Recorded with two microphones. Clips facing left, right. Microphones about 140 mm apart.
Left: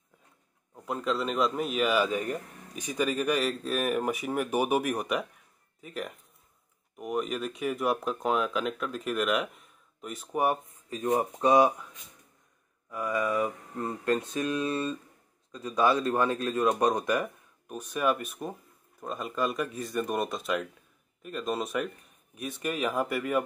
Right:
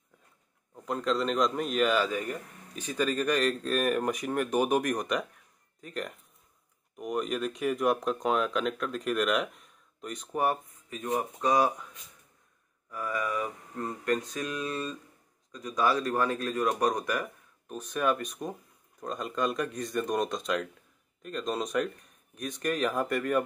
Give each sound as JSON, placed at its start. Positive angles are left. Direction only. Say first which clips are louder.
{"t": 0.8, "sound": "speech", "louder": "right 1 dB", "side_deg": 5}
{"t": 11.1, "sound": "speech", "louder": "left 4 dB", "side_deg": 30}
{"t": 12.9, "sound": "speech", "louder": "left 4 dB", "side_deg": 20}
{"t": 17.6, "sound": "speech", "louder": "left 1 dB", "side_deg": 10}